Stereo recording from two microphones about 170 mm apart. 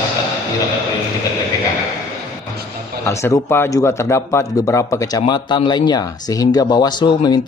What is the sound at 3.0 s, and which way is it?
A man's voice, 15° left (ahead or behind).